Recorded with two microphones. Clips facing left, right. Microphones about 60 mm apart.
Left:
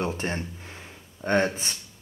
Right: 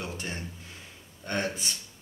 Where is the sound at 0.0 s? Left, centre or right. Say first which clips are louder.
Left 8 dB; left.